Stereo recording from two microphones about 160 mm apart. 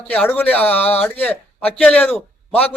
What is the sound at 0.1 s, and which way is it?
A man's voice, 10° left (ahead or behind).